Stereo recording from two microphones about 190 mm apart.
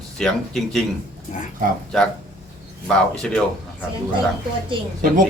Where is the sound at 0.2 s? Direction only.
5° left (ahead or behind).